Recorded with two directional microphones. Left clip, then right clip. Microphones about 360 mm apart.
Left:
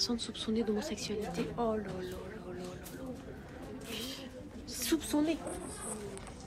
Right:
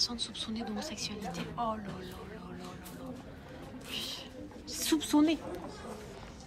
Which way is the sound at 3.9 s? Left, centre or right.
Centre.